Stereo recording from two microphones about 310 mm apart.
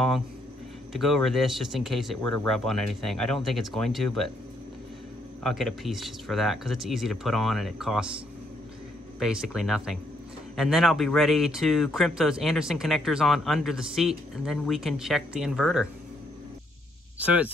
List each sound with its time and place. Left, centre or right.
0.9 s speech: centre
5.4 s speech: centre
9.2 s speech: centre
17.2 s speech: centre